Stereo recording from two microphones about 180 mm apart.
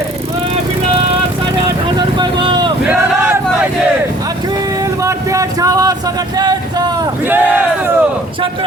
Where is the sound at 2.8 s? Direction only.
10° right (ahead or behind).